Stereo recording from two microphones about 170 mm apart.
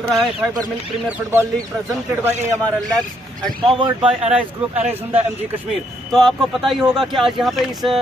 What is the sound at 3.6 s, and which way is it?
Speech, 25° right (ahead or behind).